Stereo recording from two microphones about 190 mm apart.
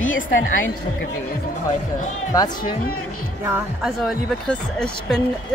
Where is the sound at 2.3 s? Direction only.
20° left (ahead or behind).